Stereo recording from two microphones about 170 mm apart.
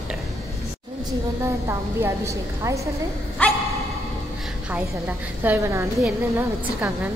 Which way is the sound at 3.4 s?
5° left (ahead or behind).